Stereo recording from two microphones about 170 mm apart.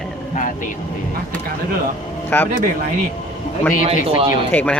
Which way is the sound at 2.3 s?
15° left (ahead or behind).